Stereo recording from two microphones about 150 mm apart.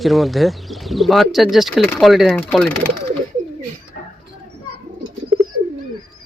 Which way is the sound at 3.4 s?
55° right (ahead or behind).